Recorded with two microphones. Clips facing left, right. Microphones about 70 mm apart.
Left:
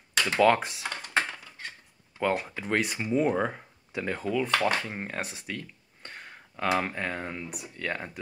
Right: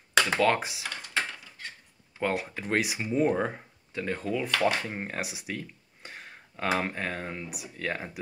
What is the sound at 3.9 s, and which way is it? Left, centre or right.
Speech, centre.